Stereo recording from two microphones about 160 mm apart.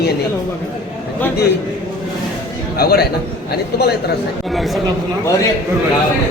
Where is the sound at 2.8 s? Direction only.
75° left (ahead or behind).